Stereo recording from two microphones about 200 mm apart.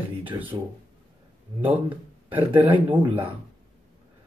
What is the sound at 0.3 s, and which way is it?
Speech, 10° right (ahead or behind).